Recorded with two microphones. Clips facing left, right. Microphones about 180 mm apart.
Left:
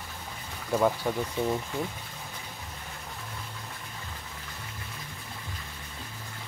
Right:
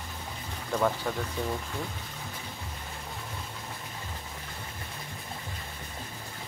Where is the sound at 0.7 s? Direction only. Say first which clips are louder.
Left 3 dB; 10° left (ahead or behind).